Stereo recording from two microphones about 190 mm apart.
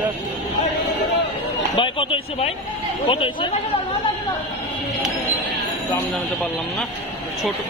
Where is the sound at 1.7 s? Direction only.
25° left (ahead or behind).